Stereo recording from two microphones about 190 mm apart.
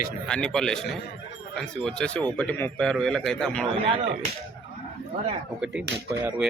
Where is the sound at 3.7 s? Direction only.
30° right (ahead or behind).